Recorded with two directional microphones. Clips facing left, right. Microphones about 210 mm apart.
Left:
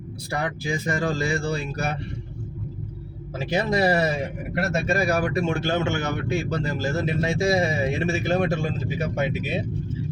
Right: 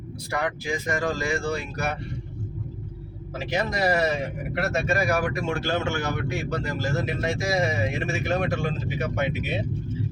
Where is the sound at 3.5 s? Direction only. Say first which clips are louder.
Left 3 dB; 30° left (ahead or behind).